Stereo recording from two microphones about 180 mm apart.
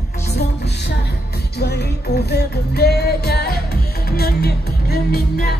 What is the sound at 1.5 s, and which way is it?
Music, 65° left (ahead or behind).